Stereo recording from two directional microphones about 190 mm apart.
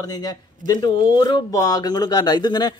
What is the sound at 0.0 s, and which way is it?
Speech, 20° left (ahead or behind).